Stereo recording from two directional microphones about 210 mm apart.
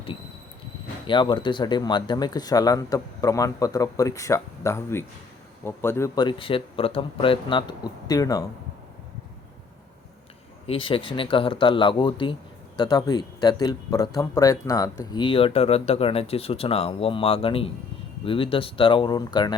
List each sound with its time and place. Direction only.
1.0 s speech: 20° left (ahead or behind)
10.7 s speech: 25° left (ahead or behind)